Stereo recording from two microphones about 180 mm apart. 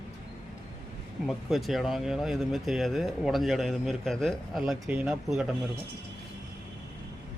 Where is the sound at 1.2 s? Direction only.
Centre (ahead or behind).